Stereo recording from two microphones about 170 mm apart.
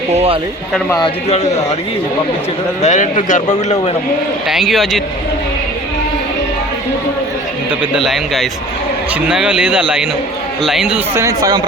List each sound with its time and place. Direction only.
0.1 s speech: 35° right (ahead or behind)
2.8 s speech: 45° left (ahead or behind)
4.4 s a man's voice: centre (ahead or behind)
7.8 s a man's voice: centre (ahead or behind)
11.1 s speech: 15° right (ahead or behind)